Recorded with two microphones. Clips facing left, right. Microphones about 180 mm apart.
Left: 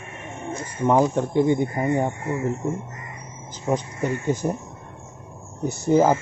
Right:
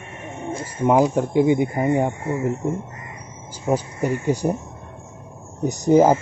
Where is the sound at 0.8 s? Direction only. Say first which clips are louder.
Right 2 dB; 10° right (ahead or behind).